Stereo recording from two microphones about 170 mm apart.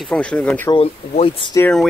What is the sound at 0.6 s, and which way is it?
Speech, 35° left (ahead or behind).